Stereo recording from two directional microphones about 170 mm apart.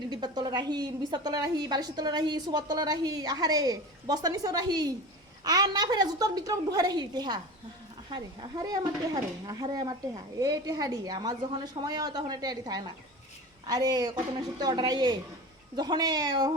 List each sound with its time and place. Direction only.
0.1 s a woman's voice: 25° right (ahead or behind)